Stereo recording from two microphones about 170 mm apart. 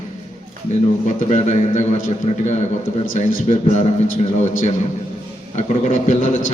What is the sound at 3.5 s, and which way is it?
A man's voice, 40° left (ahead or behind).